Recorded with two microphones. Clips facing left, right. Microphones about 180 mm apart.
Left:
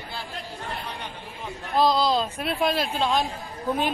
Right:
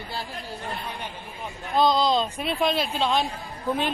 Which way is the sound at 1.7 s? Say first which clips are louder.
Even; centre (ahead or behind).